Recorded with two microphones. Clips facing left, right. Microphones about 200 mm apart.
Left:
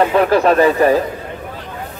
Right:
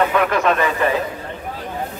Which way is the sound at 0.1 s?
35° left (ahead or behind).